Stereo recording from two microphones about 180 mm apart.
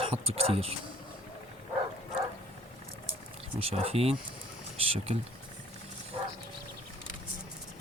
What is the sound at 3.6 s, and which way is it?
Speech, 35° right (ahead or behind).